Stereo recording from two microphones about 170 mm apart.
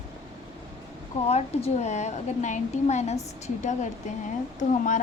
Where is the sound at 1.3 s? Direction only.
40° left (ahead or behind).